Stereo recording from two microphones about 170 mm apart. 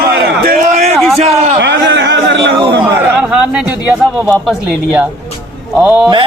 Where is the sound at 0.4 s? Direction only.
55° right (ahead or behind).